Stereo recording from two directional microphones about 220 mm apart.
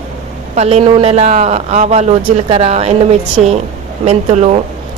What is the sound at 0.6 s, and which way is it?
A man's voice, 30° right (ahead or behind).